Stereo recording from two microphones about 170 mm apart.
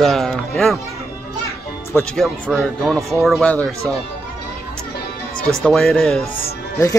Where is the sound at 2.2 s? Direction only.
Centre (ahead or behind).